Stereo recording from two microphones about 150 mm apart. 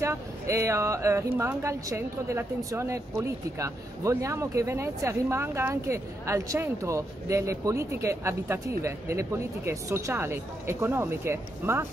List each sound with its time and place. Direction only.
0.0 s speech: 20° right (ahead or behind)